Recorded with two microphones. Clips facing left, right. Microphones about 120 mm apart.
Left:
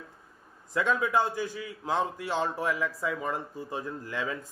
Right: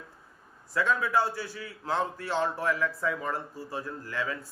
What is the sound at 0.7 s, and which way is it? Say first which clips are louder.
A man's voice: even; 20° left (ahead or behind).